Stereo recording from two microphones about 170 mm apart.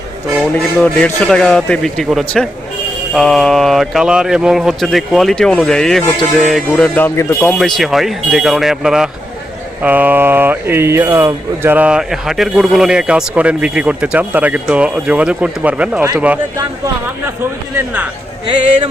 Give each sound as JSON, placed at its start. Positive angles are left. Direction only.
{"t": 0.5, "sound": "speech", "side_deg": 5}
{"t": 7.6, "sound": "speech", "side_deg": 0}
{"t": 16.6, "sound": "speech", "side_deg": -20}